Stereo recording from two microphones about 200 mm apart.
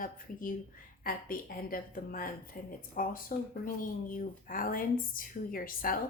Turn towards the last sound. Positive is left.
turn(degrees=45)  # may be behind; listen again after turning